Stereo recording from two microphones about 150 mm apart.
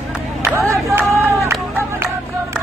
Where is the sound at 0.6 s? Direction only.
15° right (ahead or behind).